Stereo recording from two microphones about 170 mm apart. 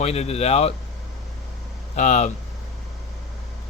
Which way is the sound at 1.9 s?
45° left (ahead or behind).